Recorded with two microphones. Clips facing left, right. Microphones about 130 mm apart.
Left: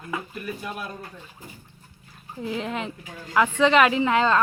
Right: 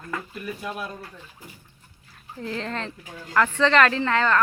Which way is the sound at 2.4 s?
10° left (ahead or behind).